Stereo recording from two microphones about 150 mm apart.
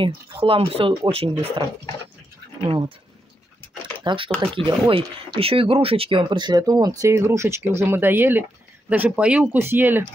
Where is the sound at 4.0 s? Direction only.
35° right (ahead or behind).